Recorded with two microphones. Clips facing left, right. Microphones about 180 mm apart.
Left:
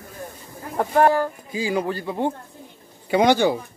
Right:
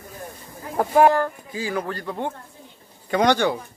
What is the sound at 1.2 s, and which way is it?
Speech, 15° left (ahead or behind).